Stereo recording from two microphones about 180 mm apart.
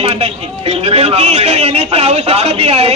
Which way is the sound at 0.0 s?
35° right (ahead or behind).